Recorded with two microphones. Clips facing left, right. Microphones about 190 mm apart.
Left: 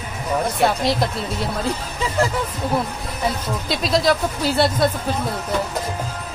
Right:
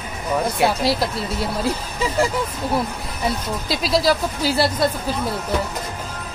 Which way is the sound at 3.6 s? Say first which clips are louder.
Even; centre (ahead or behind).